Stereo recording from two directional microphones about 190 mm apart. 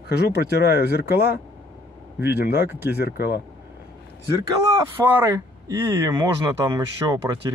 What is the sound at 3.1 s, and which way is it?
Speech, 55° left (ahead or behind).